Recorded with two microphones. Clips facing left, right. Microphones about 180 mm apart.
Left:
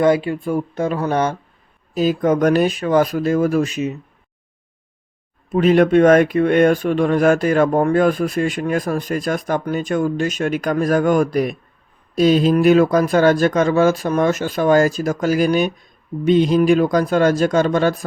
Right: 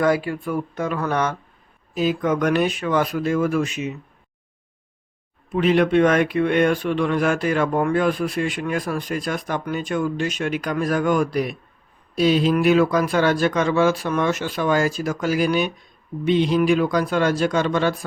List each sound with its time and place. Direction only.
0.0 s speech: 25° left (ahead or behind)
2.0 s speech: 40° left (ahead or behind)
5.5 s speech: 40° left (ahead or behind)